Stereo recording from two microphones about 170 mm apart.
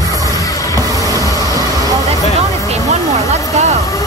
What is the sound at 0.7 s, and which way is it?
Train, 20° right (ahead or behind).